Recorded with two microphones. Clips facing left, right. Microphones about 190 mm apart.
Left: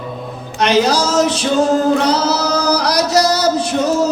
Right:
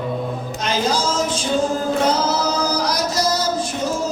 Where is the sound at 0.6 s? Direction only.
75° left (ahead or behind).